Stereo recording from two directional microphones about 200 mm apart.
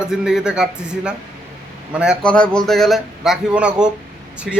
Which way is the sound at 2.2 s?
5° left (ahead or behind).